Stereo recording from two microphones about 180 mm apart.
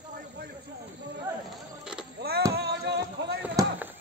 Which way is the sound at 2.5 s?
65° right (ahead or behind).